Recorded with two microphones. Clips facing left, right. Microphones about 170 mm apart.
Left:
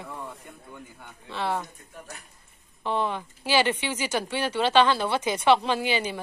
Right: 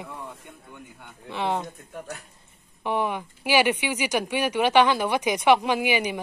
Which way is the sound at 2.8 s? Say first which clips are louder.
Right 1 dB; 15° right (ahead or behind).